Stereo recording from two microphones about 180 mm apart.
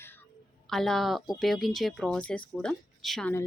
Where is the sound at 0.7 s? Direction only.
Centre (ahead or behind).